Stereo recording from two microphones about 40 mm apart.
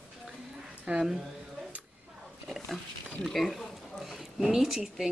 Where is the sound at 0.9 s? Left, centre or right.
Right.